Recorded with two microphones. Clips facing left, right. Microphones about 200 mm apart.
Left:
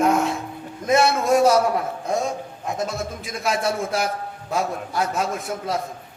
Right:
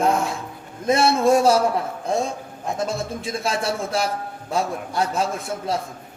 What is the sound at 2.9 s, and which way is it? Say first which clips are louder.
A man's voice: right 3 dB; 30° right (ahead or behind).